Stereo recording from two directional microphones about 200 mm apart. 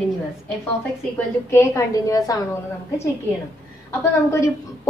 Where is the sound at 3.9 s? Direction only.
15° left (ahead or behind).